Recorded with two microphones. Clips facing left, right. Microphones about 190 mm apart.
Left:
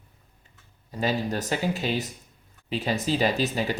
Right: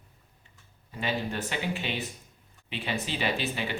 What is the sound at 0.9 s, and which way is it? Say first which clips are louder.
Speech: left 5 dB; 40° left (ahead or behind).